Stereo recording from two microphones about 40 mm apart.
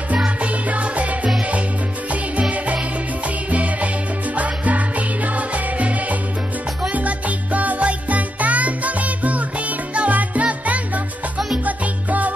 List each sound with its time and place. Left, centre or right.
0.4 s music: right
2.5 s music: right
11.3 s salsa music: centre
11.6 s music: right